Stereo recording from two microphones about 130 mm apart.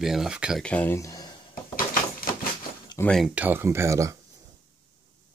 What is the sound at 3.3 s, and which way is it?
Speech, 15° right (ahead or behind).